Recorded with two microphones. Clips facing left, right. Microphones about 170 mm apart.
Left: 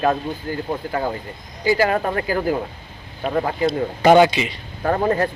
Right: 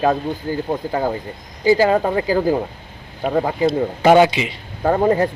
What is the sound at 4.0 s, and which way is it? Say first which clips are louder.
Speech: even; 10° right (ahead or behind).